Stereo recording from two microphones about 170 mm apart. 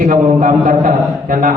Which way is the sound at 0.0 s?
50° right (ahead or behind).